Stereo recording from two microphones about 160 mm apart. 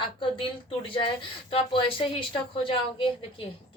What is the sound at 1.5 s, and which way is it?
Speech, 35° left (ahead or behind).